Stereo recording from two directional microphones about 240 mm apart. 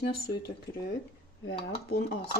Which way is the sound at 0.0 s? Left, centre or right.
Left.